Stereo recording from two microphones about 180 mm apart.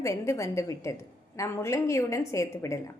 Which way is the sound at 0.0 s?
15° left (ahead or behind).